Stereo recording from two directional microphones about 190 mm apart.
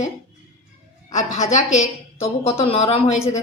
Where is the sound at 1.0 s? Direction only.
40° left (ahead or behind).